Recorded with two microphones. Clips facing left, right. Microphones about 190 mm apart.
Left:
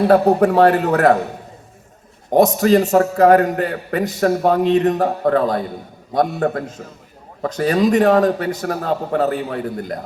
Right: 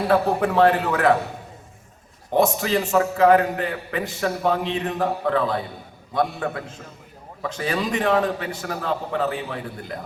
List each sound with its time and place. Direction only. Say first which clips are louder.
0.1 s a man's voice: left 5 dB; 45° left (ahead or behind)
2.3 s a man's voice: left 7 dB; 40° left (ahead or behind)